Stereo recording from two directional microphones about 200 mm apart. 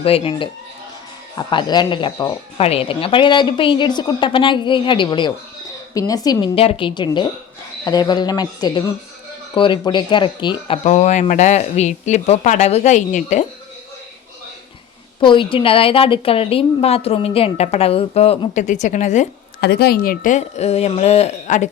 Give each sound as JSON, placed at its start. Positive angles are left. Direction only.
{"t": 0.0, "sound": "a woman's voice", "side_deg": 30}
{"t": 10.8, "sound": "speech", "side_deg": 35}
{"t": 15.2, "sound": "a woman's voice", "side_deg": 25}
{"t": 19.6, "sound": "speech", "side_deg": 55}